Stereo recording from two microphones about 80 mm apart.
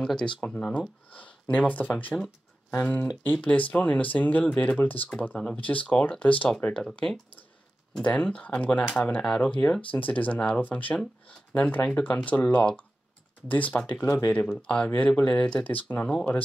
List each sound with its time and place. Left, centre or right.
0.0 s speech: centre
14.0 s speech: left
14.3 s speech: centre